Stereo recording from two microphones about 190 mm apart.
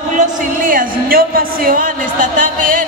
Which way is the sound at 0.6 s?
50° right (ahead or behind).